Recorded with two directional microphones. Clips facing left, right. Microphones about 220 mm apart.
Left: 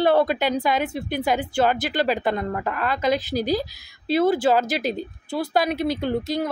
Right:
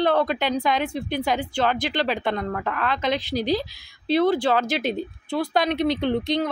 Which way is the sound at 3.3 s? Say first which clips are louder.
Even; 45° left (ahead or behind).